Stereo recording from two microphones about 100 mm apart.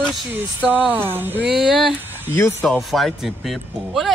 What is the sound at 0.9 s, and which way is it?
Speech, 20° right (ahead or behind).